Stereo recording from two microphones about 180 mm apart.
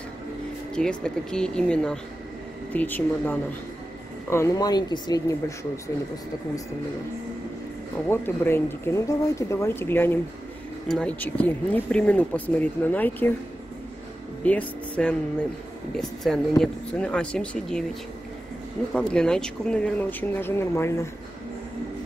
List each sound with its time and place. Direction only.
0.7 s speech: 5° left (ahead or behind); by 5.7 s 20° left (ahead or behind)
8.1 s speech: 10° left (ahead or behind)
14.4 s speech: 10° left (ahead or behind)
18.9 s speech: 5° left (ahead or behind)